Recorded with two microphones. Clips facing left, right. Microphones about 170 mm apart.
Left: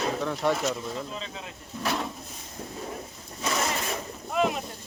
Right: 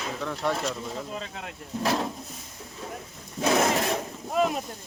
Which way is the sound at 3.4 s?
65° right (ahead or behind).